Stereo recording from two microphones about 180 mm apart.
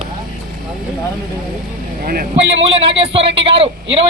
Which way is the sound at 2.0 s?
55° right (ahead or behind).